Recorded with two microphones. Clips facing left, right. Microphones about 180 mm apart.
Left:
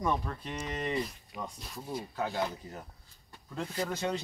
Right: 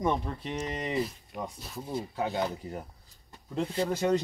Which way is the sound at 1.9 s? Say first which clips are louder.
Right 3 dB; 25° right (ahead or behind).